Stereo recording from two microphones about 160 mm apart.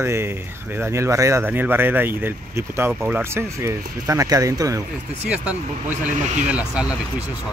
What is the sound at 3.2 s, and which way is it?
Speech, 15° right (ahead or behind).